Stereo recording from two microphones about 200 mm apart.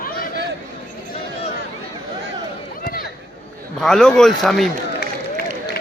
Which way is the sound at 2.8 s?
45° left (ahead or behind).